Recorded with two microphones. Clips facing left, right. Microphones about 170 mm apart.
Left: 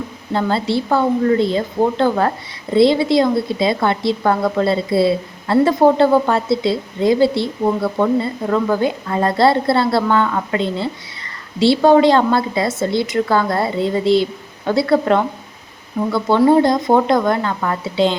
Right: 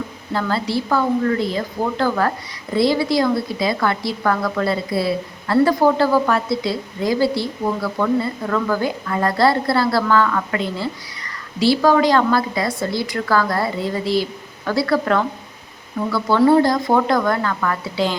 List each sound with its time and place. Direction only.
0.3 s a woman's voice: 25° left (ahead or behind)